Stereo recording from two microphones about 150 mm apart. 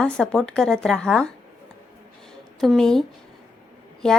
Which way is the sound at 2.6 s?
Centre (ahead or behind).